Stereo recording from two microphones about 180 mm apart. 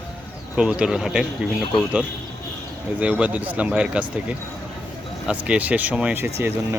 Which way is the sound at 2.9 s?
10° right (ahead or behind).